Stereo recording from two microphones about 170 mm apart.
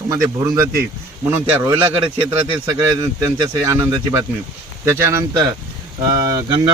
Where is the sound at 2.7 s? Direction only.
20° right (ahead or behind).